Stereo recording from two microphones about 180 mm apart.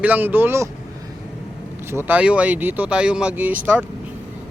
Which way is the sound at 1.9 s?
10° right (ahead or behind).